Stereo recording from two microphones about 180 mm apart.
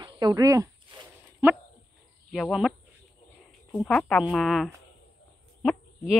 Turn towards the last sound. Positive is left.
turn(degrees=0)  # may be behind; listen again after turning